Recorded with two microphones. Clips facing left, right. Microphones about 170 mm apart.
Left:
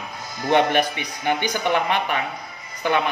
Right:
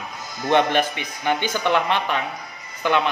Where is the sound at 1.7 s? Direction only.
50° left (ahead or behind).